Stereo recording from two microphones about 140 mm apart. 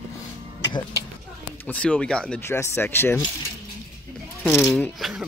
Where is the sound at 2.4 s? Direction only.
15° left (ahead or behind).